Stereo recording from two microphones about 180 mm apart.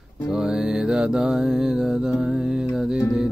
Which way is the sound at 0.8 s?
5° right (ahead or behind).